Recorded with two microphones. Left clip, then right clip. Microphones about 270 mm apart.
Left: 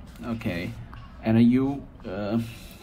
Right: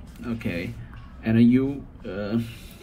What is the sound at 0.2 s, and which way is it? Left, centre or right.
Speech, centre.